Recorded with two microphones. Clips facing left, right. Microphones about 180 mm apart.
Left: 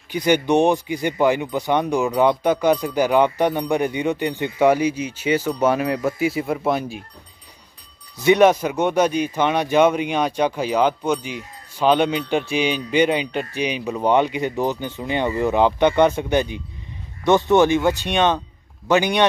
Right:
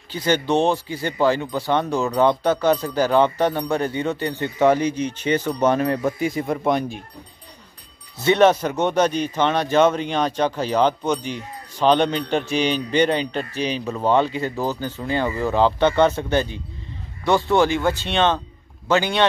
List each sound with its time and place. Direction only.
0.1 s speech: 15° left (ahead or behind)
8.2 s speech: 10° left (ahead or behind)